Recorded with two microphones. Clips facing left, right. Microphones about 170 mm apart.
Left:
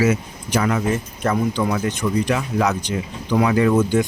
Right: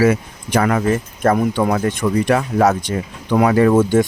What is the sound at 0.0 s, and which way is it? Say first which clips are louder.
Speech: right 4 dB; 55° right (ahead or behind).